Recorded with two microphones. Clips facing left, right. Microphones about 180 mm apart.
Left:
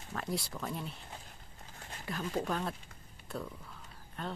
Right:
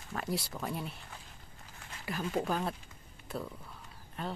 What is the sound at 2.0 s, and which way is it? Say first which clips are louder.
Speech: right 2 dB; 5° right (ahead or behind).